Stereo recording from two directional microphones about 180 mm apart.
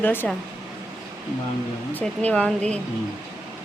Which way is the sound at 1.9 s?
10° left (ahead or behind).